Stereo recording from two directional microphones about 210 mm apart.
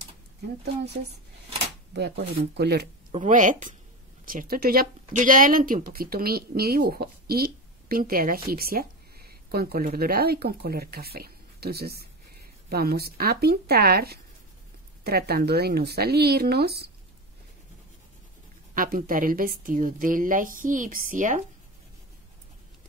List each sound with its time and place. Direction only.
2.0 s speech: 55° right (ahead or behind)
3.1 s a woman's voice: 35° right (ahead or behind)
18.8 s a woman's voice: 40° right (ahead or behind)